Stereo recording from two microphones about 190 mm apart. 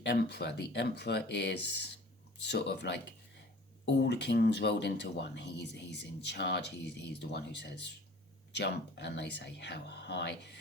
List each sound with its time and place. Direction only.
0.0 s speech: 60° left (ahead or behind)